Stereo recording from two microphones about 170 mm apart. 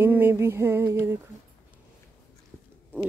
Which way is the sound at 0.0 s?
10° right (ahead or behind).